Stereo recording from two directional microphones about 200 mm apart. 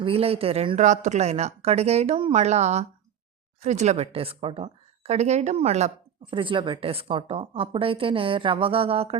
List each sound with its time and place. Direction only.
0.0 s a woman's voice: 30° right (ahead or behind)